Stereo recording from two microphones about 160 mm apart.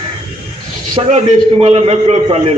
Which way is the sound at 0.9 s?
40° right (ahead or behind).